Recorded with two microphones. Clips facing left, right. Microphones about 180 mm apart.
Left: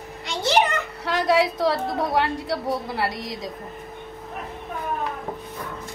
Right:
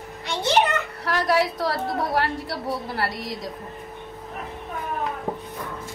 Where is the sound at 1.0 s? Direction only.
25° left (ahead or behind).